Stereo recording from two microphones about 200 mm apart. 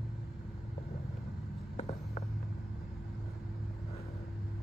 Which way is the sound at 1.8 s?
35° left (ahead or behind).